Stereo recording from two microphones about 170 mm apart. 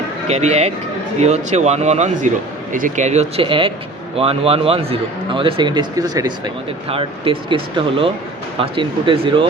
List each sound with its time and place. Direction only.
0.3 s a man's voice: 40° right (ahead or behind)